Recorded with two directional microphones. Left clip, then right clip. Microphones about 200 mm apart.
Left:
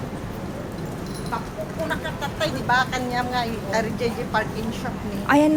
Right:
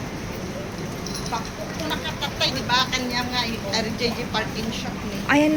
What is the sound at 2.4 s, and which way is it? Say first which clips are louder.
Speech: left 1 dB; 45° left (ahead or behind).